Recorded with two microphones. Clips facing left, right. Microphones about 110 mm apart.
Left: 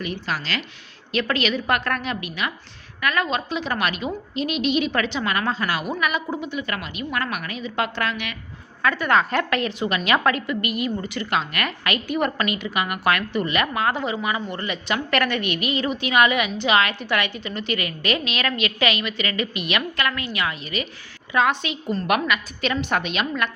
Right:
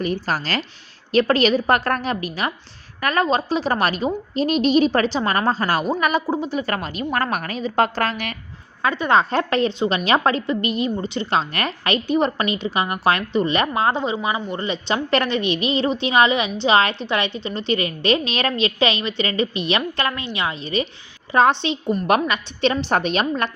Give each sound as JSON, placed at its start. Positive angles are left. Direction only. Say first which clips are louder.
{"t": 0.0, "sound": "a woman's voice", "louder": "right 5 dB", "side_deg": -40}
{"t": 8.8, "sound": "a woman's voice", "louder": "right 2 dB", "side_deg": -20}